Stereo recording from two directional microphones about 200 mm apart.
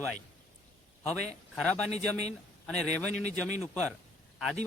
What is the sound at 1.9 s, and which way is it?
Speech, 35° left (ahead or behind).